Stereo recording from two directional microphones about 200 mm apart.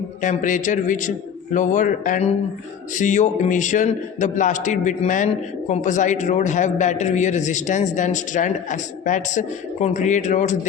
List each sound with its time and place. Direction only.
0.2 s a man's voice: 40° left (ahead or behind)